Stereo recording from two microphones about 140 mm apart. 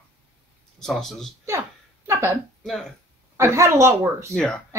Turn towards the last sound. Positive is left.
turn(degrees=5)  # may be behind; listen again after turning